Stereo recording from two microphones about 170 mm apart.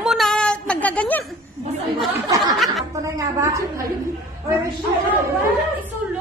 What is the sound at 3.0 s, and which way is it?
Speech, 20° right (ahead or behind).